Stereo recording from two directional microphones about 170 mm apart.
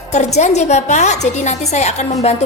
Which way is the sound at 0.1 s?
40° left (ahead or behind).